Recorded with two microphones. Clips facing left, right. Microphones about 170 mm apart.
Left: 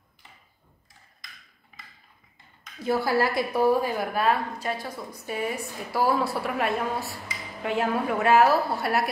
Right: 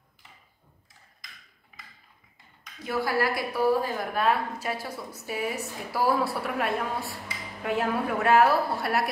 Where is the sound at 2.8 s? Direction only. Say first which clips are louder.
Left 3 dB; 30° left (ahead or behind).